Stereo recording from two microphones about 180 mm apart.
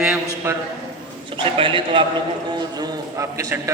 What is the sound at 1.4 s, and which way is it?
Speech, 30° right (ahead or behind).